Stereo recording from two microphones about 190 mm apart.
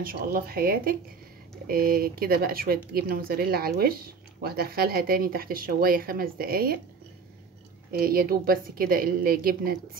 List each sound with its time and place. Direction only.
0.0 s speech: 50° right (ahead or behind)
7.9 s speech: 50° right (ahead or behind)